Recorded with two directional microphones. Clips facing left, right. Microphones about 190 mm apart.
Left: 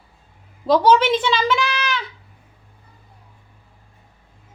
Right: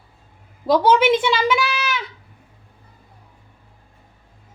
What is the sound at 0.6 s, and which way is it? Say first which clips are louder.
A child's voice: even; 10° right (ahead or behind).